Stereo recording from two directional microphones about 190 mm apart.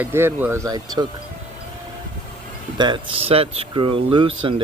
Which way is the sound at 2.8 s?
25° right (ahead or behind).